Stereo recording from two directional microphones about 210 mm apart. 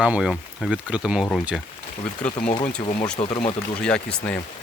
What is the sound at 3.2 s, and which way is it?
Speech, 25° left (ahead or behind).